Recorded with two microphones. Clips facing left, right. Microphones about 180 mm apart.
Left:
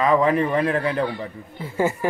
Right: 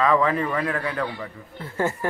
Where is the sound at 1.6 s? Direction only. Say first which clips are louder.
Left 3 dB; 10° left (ahead or behind).